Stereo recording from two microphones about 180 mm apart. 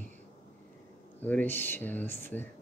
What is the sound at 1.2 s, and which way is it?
Speech, 10° left (ahead or behind).